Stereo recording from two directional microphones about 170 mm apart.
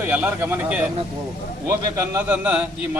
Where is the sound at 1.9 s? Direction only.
10° right (ahead or behind).